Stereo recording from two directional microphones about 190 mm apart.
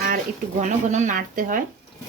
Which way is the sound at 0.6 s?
40° right (ahead or behind).